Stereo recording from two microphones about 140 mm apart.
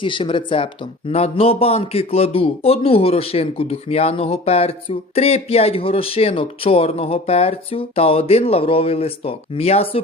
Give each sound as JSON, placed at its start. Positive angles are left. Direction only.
{"t": 0.0, "sound": "speech", "side_deg": 35}